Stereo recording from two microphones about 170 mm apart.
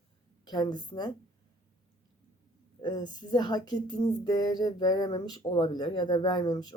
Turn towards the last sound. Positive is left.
turn(degrees=25)  # may be behind; listen again after turning